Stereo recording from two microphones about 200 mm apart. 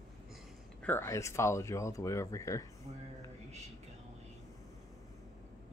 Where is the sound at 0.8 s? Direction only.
10° left (ahead or behind).